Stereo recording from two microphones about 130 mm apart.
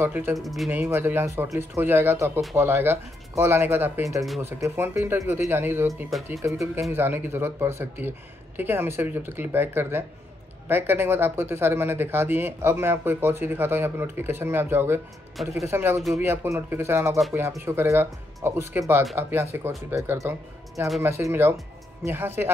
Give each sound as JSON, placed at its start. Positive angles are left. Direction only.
{"t": 0.0, "sound": "speech", "side_deg": -15}
{"t": 0.4, "sound": "speech", "side_deg": 0}
{"t": 0.7, "sound": "speech", "side_deg": -15}
{"t": 15.4, "sound": "speech", "side_deg": 0}
{"t": 15.7, "sound": "speech", "side_deg": -20}